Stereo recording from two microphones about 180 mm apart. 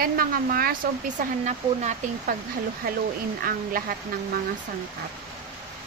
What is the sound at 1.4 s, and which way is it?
Speech, 45° right (ahead or behind).